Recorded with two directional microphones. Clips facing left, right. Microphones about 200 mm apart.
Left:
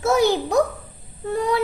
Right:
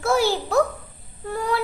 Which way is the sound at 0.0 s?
20° left (ahead or behind).